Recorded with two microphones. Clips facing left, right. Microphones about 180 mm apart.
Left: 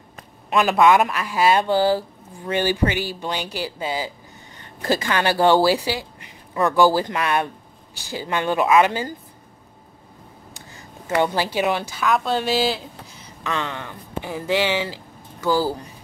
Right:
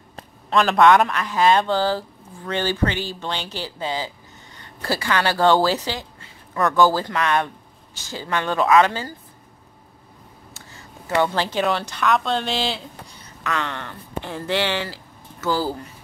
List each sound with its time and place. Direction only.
0.5 s a man's voice: 10° left (ahead or behind)
10.5 s speech: 15° left (ahead or behind)
13.4 s a man's voice: 20° left (ahead or behind)